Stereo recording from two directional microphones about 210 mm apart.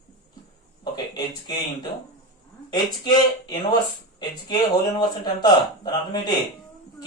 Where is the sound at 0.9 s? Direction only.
20° left (ahead or behind).